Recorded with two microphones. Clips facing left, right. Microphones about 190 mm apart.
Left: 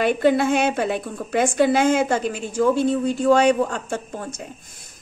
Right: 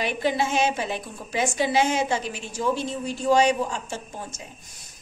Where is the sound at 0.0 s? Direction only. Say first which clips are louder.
Left 7 dB; 55° left (ahead or behind).